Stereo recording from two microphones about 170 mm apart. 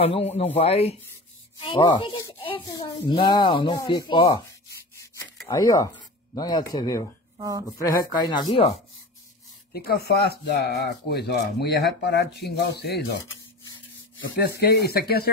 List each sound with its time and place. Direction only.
0.0 s a man's voice: 35° left (ahead or behind)
5.5 s speech: 20° left (ahead or behind)
7.3 s speech: 20° right (ahead or behind)
8.2 s speech: 25° left (ahead or behind)
9.7 s speech: 65° left (ahead or behind)
14.6 s speech: 70° left (ahead or behind)